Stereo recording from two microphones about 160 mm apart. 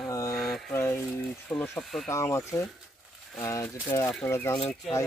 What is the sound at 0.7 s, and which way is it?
Speech, 15° left (ahead or behind).